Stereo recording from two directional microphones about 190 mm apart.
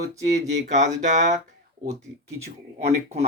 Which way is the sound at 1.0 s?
40° right (ahead or behind).